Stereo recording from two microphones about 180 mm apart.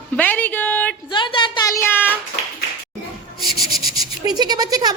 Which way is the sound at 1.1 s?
25° left (ahead or behind).